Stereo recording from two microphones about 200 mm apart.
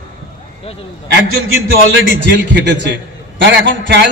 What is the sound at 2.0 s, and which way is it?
A man's voice, 70° right (ahead or behind).